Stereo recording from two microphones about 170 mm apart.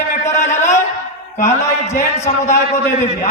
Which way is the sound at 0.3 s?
45° left (ahead or behind).